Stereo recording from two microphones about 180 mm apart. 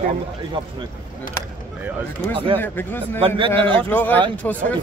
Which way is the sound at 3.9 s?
10° left (ahead or behind).